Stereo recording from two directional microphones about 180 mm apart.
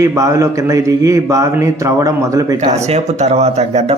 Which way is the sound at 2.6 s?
40° right (ahead or behind).